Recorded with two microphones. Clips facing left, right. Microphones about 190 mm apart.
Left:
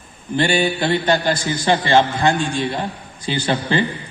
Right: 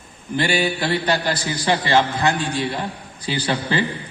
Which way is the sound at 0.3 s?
25° left (ahead or behind).